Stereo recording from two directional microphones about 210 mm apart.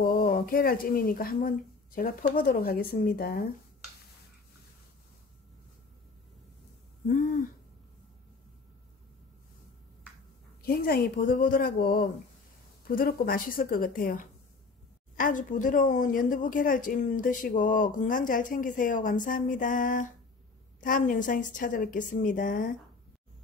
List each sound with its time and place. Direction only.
0.0 s speech: 40° left (ahead or behind)
10.6 s a woman's voice: 45° left (ahead or behind)